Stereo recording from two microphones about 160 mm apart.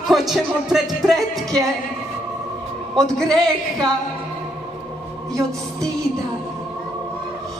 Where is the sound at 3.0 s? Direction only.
5° left (ahead or behind).